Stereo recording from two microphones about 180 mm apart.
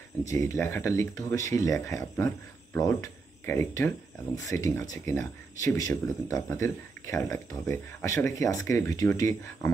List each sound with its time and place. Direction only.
0.2 s speech: 15° left (ahead or behind)